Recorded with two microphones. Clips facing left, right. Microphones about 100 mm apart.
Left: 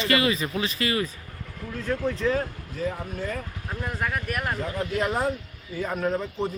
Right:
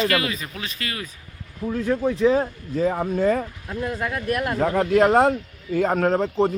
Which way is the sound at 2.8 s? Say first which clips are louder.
Right 9 dB; 75° right (ahead or behind).